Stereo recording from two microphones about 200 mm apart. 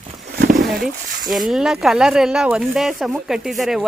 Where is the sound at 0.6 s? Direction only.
Centre (ahead or behind).